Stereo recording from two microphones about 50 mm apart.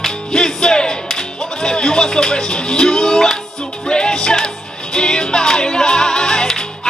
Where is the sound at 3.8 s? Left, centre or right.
Centre.